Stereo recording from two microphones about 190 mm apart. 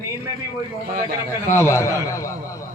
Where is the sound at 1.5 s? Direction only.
15° left (ahead or behind).